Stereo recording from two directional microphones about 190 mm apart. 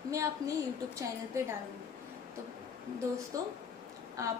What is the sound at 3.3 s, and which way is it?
Speech, 20° right (ahead or behind).